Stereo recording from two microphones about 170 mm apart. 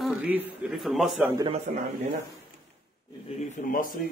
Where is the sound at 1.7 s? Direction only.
45° right (ahead or behind).